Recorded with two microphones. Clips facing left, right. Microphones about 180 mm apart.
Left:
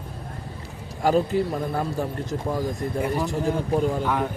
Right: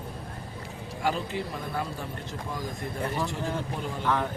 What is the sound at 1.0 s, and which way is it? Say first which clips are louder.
Speech: left 9 dB; 40° left (ahead or behind).